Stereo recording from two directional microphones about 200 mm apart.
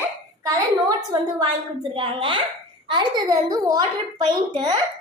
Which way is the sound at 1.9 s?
25° right (ahead or behind).